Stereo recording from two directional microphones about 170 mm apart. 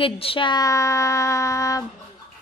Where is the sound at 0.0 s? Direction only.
30° left (ahead or behind).